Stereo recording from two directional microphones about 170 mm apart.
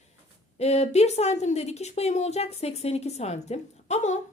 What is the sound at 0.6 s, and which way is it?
A woman's voice, 40° left (ahead or behind).